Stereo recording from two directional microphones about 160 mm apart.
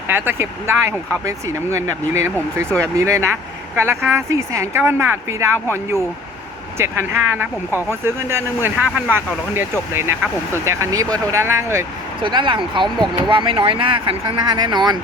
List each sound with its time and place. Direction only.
0.1 s speech: 15° right (ahead or behind)
6.7 s speech: 15° right (ahead or behind)
12.2 s speech: 30° right (ahead or behind)